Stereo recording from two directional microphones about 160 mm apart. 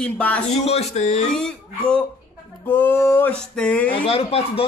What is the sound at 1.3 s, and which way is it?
Speech, 5° left (ahead or behind).